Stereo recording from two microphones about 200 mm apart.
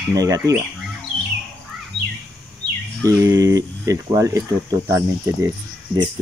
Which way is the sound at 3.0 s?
15° right (ahead or behind).